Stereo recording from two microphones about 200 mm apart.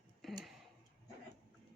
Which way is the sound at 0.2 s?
Centre (ahead or behind).